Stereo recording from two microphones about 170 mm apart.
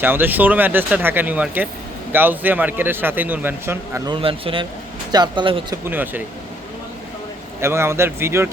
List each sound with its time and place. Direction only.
0.0 s speech: 10° right (ahead or behind)
4.1 s a man's voice: 30° right (ahead or behind)
5.7 s speech: 10° right (ahead or behind)
7.6 s speech: 15° right (ahead or behind)